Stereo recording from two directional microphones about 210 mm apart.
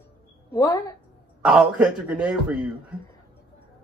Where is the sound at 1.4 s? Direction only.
5° right (ahead or behind).